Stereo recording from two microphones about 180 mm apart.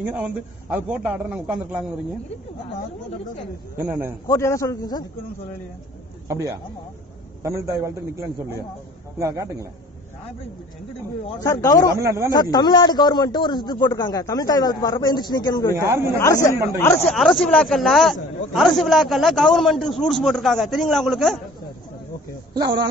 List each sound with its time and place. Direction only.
0.0 s a man's voice: 10° right (ahead or behind)
3.7 s a man's voice: 10° right (ahead or behind)
4.3 s a man's voice: 15° left (ahead or behind)
7.4 s a man's voice: 15° right (ahead or behind)
11.2 s a man's voice: 20° left (ahead or behind)
12.0 s speech: 20° right (ahead or behind)
12.3 s a man's voice: 20° left (ahead or behind)
15.7 s a man's voice: 15° right (ahead or behind)
17.0 s a man's voice: centre (ahead or behind)
22.5 s speech: 25° right (ahead or behind)